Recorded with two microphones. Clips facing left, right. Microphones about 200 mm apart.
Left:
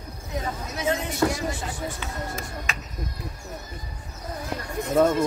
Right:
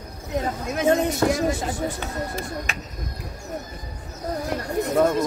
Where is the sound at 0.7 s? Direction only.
50° right (ahead or behind).